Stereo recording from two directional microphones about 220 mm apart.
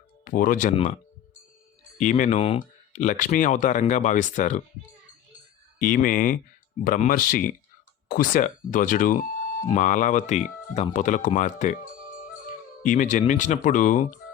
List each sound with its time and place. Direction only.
0.3 s speech: 40° left (ahead or behind)
2.0 s speech: 35° left (ahead or behind)
5.8 s speech: 40° left (ahead or behind)
12.8 s speech: 35° left (ahead or behind)